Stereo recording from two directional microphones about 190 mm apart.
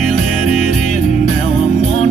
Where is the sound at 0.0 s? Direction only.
35° left (ahead or behind).